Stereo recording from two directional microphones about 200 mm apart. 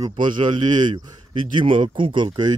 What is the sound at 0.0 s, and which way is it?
A man's voice, 25° right (ahead or behind).